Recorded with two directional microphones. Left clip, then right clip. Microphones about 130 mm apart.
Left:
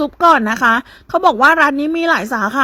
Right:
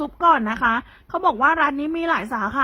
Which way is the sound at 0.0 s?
35° left (ahead or behind).